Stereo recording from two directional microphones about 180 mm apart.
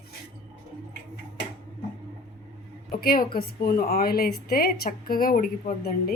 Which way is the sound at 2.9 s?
55° left (ahead or behind).